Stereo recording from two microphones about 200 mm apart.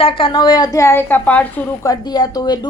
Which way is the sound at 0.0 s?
25° left (ahead or behind).